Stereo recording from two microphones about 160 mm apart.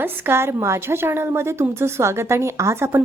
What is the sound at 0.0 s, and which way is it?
A woman's voice, 15° right (ahead or behind).